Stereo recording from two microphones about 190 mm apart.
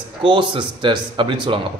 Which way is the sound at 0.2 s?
25° right (ahead or behind).